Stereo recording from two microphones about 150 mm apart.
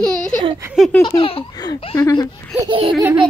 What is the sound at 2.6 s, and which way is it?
Speech, 35° right (ahead or behind).